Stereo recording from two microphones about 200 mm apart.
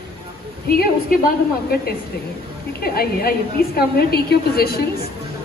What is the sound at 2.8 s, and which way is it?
A woman's voice, 50° left (ahead or behind).